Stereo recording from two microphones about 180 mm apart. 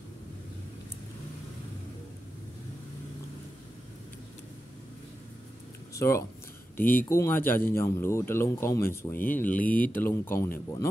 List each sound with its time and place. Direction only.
5.9 s speech: 15° left (ahead or behind)